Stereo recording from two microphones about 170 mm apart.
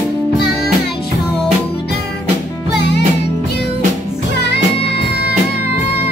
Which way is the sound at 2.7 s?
90° left.